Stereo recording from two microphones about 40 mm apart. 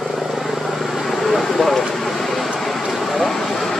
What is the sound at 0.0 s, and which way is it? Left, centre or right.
Vehicle, centre.